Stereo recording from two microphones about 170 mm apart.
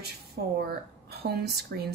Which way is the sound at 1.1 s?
70° right (ahead or behind).